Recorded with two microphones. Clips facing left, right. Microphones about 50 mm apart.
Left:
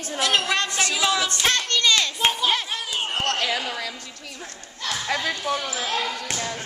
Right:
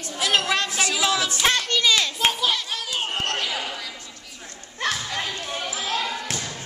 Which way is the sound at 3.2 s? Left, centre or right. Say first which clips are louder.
Left 2 dB; left.